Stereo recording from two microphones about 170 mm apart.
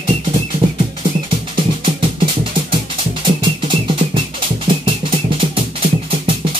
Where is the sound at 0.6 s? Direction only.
30° right (ahead or behind).